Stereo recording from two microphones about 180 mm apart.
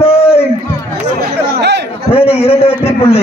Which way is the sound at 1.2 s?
70° right (ahead or behind).